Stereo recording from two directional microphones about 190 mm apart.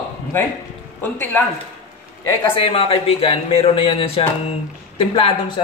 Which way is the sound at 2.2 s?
25° left (ahead or behind).